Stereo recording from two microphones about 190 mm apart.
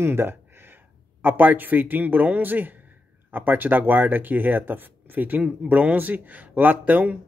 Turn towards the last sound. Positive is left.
turn(degrees=-10)  # may be behind; listen again after turning